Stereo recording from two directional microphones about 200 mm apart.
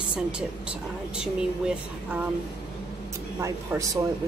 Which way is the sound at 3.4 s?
15° right (ahead or behind).